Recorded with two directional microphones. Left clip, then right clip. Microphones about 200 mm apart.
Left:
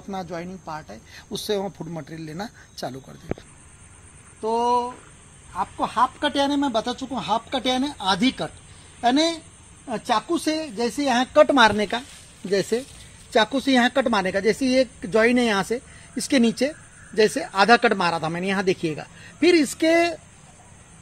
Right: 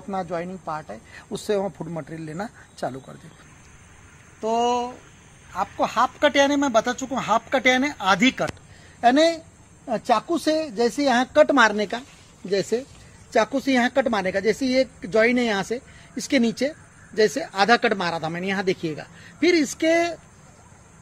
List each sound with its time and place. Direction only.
0.1 s speech: 10° right (ahead or behind)
4.4 s speech: 10° right (ahead or behind)
6.7 s speech: centre (ahead or behind)
8.0 s a woman's voice: 20° right (ahead or behind)
9.8 s speech: 40° right (ahead or behind)
10.3 s speech: 10° right (ahead or behind)
11.4 s speech: 35° left (ahead or behind)